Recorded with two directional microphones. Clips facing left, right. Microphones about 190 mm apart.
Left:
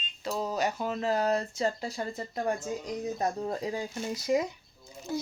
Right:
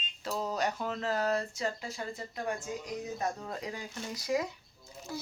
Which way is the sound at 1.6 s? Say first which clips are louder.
Left 5 dB; 35° left (ahead or behind).